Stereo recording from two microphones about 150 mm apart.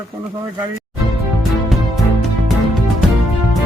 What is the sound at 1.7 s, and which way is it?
Music, centre (ahead or behind).